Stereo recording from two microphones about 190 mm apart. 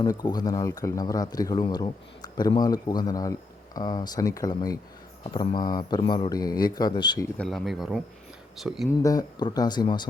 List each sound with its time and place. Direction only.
0.0 s speech: 20° left (ahead or behind)
7.3 s speech: centre (ahead or behind)
9.0 s speech: 20° left (ahead or behind)